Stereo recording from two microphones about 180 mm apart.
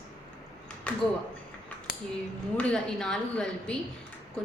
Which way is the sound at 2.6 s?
5° left (ahead or behind).